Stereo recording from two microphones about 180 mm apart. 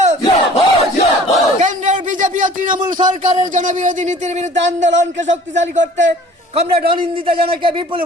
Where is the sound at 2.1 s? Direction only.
45° right (ahead or behind).